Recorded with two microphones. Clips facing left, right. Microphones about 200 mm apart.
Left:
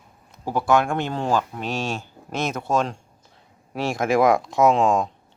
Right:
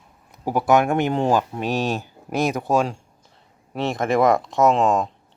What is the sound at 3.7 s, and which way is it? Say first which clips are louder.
Speech: even; centre (ahead or behind).